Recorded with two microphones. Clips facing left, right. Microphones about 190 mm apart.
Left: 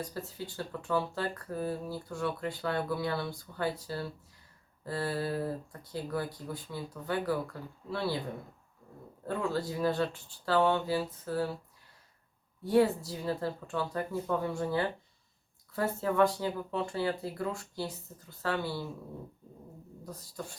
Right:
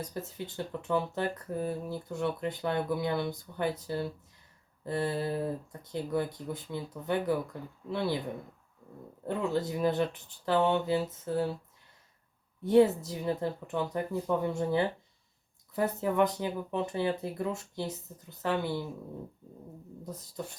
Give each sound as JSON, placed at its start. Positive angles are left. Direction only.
{"t": 0.0, "sound": "speech", "side_deg": -20}
{"t": 9.2, "sound": "speech", "side_deg": -20}
{"t": 12.6, "sound": "speech", "side_deg": -20}
{"t": 20.1, "sound": "speech", "side_deg": -20}